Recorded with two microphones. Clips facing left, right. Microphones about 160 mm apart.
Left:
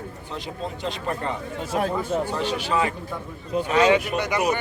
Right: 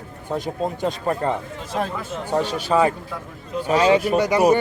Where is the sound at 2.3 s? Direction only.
40° right (ahead or behind).